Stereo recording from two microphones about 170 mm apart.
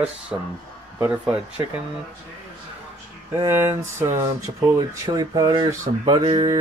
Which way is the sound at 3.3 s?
15° right (ahead or behind).